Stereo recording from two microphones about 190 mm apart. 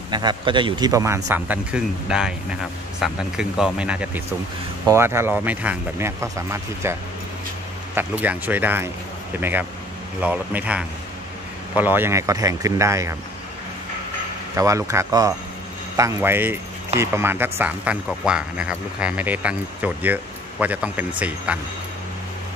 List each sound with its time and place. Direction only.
0.1 s speech: 25° right (ahead or behind)
14.5 s speech: 15° right (ahead or behind)